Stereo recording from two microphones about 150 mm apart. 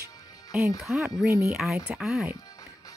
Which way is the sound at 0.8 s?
Centre (ahead or behind).